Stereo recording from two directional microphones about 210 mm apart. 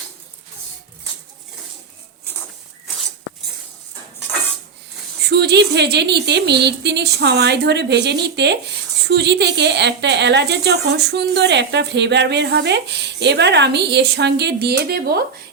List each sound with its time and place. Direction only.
5.3 s a woman's voice: 50° right (ahead or behind)